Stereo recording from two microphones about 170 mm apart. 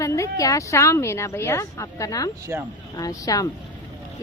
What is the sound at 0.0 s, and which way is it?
A woman's voice, 20° left (ahead or behind).